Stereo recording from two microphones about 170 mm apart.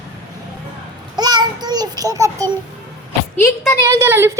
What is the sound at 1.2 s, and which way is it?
Child singing, 25° right (ahead or behind).